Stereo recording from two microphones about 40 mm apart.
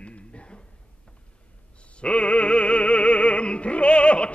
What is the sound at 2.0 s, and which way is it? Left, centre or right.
Opera, left.